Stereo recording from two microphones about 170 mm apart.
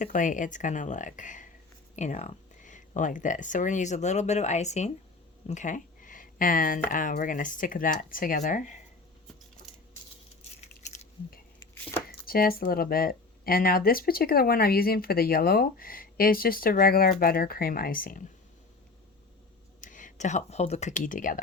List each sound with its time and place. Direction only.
0.0 s speech: 50° left (ahead or behind)
10.6 s a sound: 45° left (ahead or behind)
12.0 s speech: 60° left (ahead or behind)
19.8 s speech: 50° left (ahead or behind)